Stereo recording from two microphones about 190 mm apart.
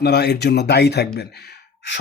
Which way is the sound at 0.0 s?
60° left (ahead or behind).